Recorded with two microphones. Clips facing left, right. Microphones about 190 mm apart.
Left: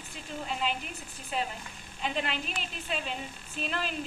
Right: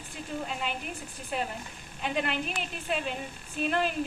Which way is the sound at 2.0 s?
50° right (ahead or behind).